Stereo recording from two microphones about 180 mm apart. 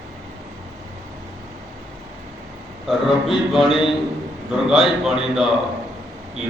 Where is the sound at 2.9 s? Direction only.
Centre (ahead or behind).